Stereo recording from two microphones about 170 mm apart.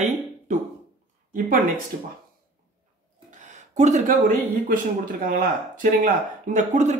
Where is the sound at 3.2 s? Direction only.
45° right (ahead or behind).